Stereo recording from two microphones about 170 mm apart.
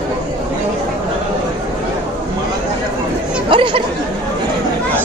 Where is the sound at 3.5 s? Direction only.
30° right (ahead or behind).